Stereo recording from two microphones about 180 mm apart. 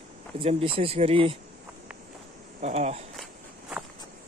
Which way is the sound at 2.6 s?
35° right (ahead or behind).